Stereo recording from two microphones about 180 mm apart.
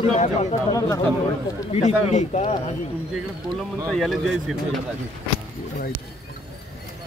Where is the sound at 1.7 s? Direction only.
40° left (ahead or behind).